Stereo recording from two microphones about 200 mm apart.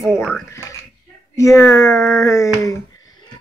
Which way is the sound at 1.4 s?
15° left (ahead or behind).